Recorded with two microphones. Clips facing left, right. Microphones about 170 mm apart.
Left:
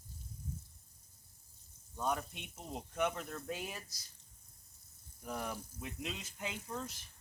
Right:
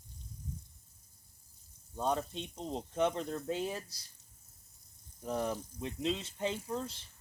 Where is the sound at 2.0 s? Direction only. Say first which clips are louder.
Right 4 dB; 30° right (ahead or behind).